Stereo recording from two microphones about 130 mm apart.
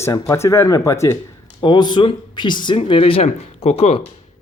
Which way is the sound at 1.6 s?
35° left (ahead or behind).